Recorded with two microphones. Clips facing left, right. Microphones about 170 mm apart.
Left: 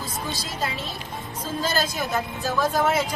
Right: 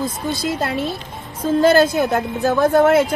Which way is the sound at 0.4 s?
55° right (ahead or behind).